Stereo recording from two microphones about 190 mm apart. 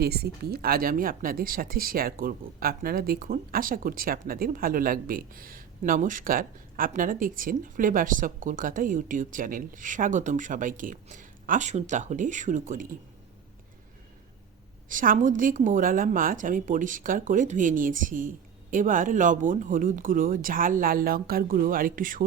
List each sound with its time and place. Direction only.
0.0 s speech: 55° right (ahead or behind)
14.8 s speech: 45° right (ahead or behind)